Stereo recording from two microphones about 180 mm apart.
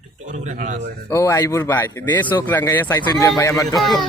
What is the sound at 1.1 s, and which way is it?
Speech, 15° left (ahead or behind).